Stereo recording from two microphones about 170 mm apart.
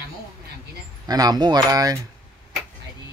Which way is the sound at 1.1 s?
20° right (ahead or behind).